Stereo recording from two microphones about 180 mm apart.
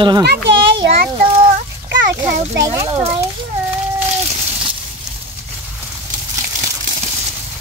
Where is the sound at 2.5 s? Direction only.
15° right (ahead or behind).